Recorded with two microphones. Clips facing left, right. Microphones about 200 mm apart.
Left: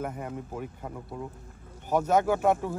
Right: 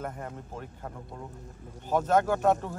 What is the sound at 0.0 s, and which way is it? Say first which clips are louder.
Speech: left 3 dB; 5° left (ahead or behind).